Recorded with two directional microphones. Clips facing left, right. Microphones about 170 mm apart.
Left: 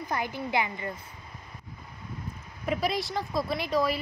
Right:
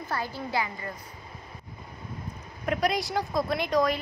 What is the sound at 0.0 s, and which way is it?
Speech, 20° left (ahead or behind).